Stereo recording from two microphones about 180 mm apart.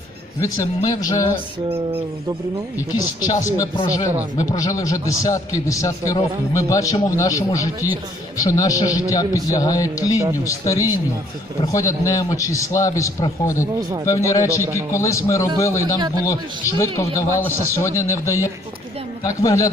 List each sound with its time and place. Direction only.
0.4 s a man's voice: 20° left (ahead or behind)
3.2 s a man's voice: 20° left (ahead or behind)
16.0 s speech: 20° right (ahead or behind)
16.2 s a man's voice: 15° left (ahead or behind)